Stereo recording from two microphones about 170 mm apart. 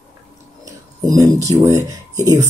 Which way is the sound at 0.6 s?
20° right (ahead or behind).